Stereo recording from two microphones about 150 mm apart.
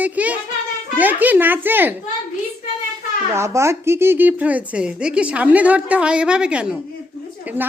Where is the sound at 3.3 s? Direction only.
20° right (ahead or behind).